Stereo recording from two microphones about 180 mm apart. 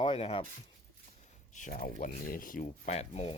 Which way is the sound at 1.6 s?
45° left (ahead or behind).